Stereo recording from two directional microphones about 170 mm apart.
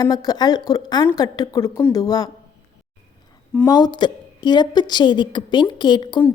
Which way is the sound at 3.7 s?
25° left (ahead or behind).